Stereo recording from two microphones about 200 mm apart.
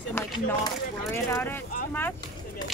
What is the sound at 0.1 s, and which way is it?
Speech, 10° left (ahead or behind).